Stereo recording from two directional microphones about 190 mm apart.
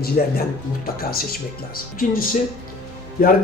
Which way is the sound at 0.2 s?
50° left (ahead or behind).